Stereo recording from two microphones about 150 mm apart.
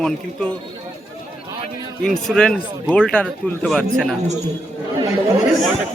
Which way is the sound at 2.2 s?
5° left (ahead or behind).